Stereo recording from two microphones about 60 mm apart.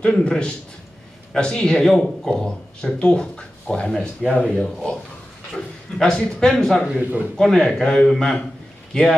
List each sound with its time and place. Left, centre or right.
0.0 s a man's voice: centre
7.0 s a man's voice: right
7.3 s speech: centre